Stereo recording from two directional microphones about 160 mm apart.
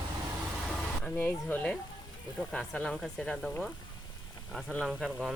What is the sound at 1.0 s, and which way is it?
Speech, 10° left (ahead or behind).